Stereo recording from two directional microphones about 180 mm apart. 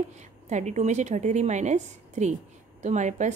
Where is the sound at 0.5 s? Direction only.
40° right (ahead or behind).